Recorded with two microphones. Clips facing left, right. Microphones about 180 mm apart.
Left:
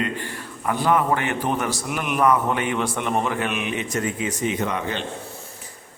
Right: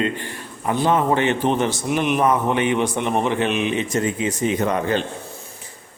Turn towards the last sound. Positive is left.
turn(degrees=-40)  # may be behind; listen again after turning